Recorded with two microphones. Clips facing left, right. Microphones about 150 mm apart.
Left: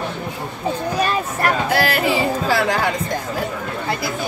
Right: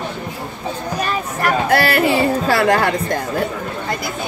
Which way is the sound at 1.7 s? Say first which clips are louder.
Right 3 dB; 60° right (ahead or behind).